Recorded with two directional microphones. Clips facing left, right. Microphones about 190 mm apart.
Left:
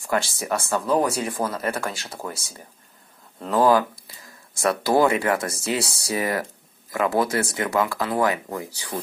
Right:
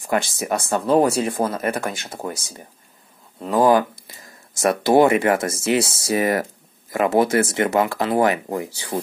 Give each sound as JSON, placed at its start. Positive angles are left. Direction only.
{"t": 0.0, "sound": "speech", "side_deg": -20}